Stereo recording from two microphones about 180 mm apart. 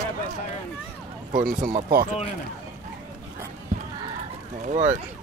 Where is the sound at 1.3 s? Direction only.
50° right (ahead or behind).